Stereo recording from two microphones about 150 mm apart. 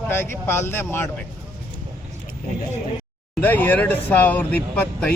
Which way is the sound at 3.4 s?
10° left (ahead or behind).